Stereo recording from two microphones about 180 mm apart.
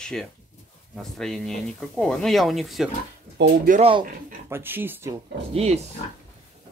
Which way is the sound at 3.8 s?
30° right (ahead or behind).